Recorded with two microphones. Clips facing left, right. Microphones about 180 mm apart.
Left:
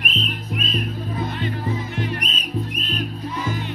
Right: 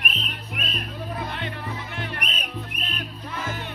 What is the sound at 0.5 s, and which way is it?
Music, 60° right (ahead or behind).